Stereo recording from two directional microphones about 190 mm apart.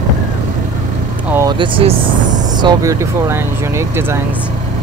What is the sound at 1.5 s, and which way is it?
Speech, 25° right (ahead or behind).